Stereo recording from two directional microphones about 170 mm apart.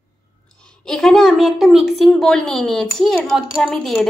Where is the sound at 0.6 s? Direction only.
5° left (ahead or behind).